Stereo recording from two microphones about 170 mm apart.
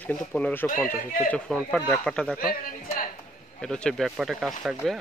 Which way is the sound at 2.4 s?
60° left (ahead or behind).